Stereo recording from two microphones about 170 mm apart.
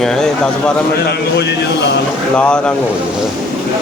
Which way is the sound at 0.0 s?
5° left (ahead or behind).